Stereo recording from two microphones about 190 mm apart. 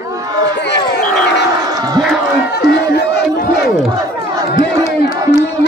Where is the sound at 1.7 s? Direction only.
20° right (ahead or behind).